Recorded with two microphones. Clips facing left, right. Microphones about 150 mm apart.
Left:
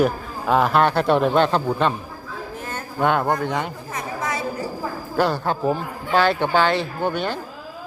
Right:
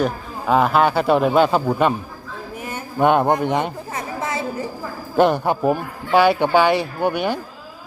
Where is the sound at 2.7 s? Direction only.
20° right (ahead or behind).